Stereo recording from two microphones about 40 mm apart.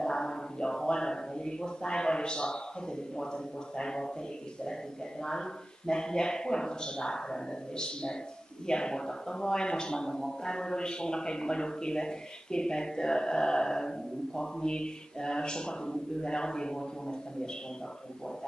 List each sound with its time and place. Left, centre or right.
0.0 s a sound: centre
3.7 s a man's voice: centre
5.2 s a man's voice: centre